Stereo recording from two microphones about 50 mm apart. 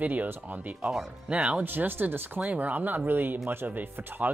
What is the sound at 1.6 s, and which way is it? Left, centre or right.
Speech, right.